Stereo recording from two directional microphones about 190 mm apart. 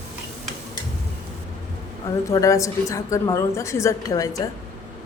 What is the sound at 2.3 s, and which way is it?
Speech, 15° left (ahead or behind).